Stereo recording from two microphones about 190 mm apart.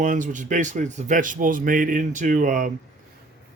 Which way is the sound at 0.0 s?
45° right (ahead or behind).